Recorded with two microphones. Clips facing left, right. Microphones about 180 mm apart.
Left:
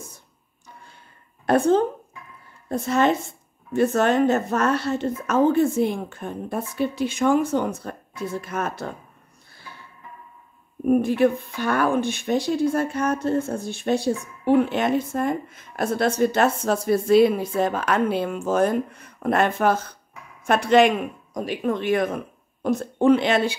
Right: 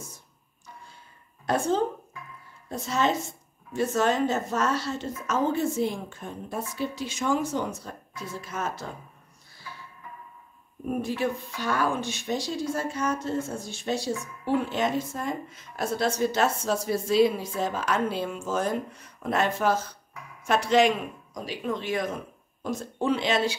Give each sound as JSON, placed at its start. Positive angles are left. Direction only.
{"t": 1.4, "sound": "a woman's voice", "side_deg": 60}
{"t": 10.9, "sound": "speech", "side_deg": 55}